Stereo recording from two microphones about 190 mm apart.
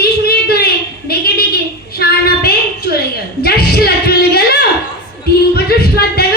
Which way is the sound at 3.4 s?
55° left (ahead or behind).